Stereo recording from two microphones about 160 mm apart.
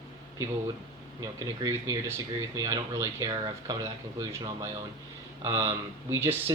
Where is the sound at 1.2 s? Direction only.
20° right (ahead or behind).